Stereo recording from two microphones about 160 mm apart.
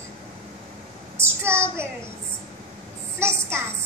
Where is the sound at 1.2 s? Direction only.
15° right (ahead or behind).